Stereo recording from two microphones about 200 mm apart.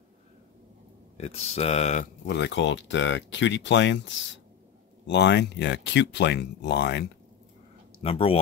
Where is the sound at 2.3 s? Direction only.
60° left (ahead or behind).